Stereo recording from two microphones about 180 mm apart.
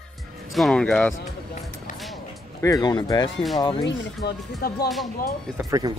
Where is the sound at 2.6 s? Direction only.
20° left (ahead or behind).